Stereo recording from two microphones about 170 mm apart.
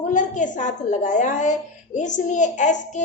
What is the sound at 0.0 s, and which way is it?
A woman's voice, 45° left (ahead or behind).